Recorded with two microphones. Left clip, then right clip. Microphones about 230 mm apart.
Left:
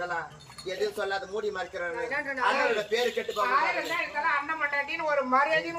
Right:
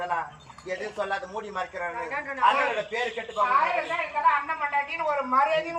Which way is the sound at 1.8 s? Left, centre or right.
Centre.